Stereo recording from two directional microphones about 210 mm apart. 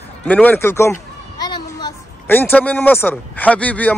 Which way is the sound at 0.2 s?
5° left (ahead or behind).